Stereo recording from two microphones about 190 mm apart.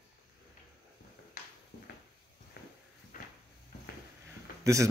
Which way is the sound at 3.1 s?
50° left (ahead or behind).